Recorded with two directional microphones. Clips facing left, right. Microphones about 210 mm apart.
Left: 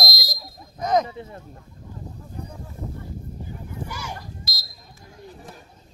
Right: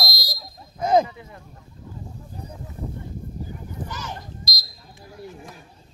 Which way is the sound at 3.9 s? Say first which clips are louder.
Even; 10° left (ahead or behind).